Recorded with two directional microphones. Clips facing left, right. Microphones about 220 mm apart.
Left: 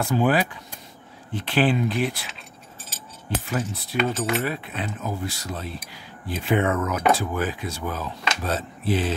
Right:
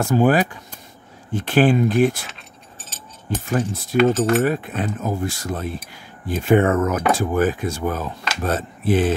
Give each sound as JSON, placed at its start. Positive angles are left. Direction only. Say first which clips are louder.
{"t": 0.0, "sound": "speech", "louder": "right 5 dB", "side_deg": -45}
{"t": 3.4, "sound": "speech", "louder": "right 8 dB", "side_deg": -45}